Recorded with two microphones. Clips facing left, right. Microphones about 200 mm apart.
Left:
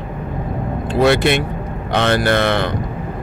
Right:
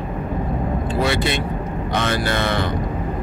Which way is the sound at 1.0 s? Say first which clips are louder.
Left 8 dB; 65° left (ahead or behind).